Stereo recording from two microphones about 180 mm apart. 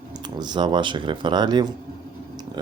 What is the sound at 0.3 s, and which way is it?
Speech, 25° right (ahead or behind).